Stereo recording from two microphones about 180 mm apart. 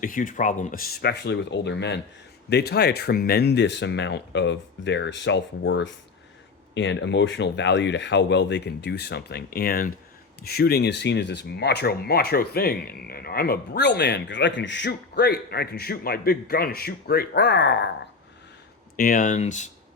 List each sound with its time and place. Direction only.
0.0 s speech: 50° left (ahead or behind); by 17.8 s 85° left
18.9 s speech: 50° left (ahead or behind)